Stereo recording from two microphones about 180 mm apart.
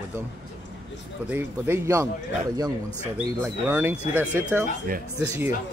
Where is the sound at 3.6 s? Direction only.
15° right (ahead or behind).